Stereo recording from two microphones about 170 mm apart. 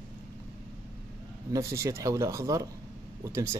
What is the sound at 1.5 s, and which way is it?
Speech, 20° right (ahead or behind).